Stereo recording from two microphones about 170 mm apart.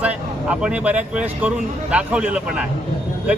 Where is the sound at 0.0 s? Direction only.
5° right (ahead or behind).